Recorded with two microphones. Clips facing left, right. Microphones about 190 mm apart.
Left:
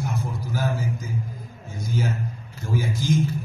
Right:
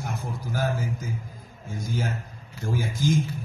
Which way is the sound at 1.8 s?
50° right (ahead or behind).